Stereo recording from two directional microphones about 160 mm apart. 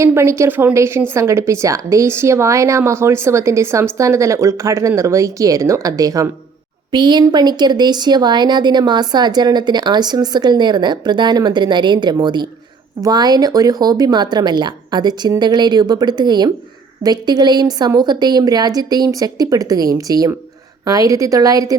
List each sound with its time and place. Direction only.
0.0 s a woman's voice: 15° right (ahead or behind)